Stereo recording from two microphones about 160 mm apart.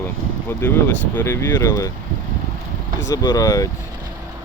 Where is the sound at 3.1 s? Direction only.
20° left (ahead or behind).